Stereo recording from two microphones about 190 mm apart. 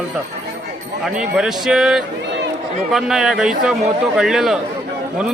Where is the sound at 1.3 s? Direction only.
5° right (ahead or behind).